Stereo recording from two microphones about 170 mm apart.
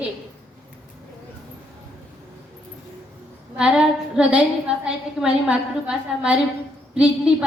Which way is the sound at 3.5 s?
5° right (ahead or behind).